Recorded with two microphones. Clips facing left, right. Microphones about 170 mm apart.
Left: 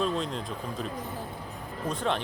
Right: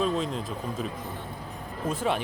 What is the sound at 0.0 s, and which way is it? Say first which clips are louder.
Speech: right 2 dB; centre (ahead or behind).